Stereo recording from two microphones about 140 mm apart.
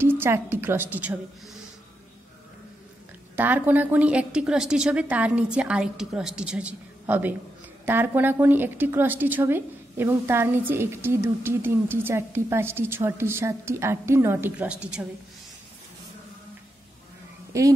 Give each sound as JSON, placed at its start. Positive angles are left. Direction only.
{"t": 0.0, "sound": "a woman's voice", "side_deg": -15}
{"t": 3.3, "sound": "a woman's voice", "side_deg": -15}
{"t": 17.5, "sound": "speech", "side_deg": -20}